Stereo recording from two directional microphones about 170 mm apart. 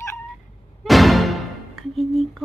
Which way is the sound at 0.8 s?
Centre (ahead or behind).